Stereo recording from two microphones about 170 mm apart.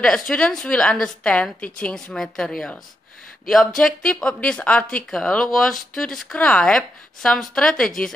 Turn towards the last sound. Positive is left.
turn(degrees=5)  # may be behind; listen again after turning